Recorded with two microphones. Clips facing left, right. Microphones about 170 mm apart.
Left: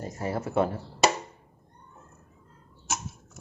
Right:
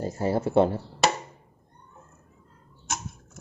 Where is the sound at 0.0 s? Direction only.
30° right (ahead or behind).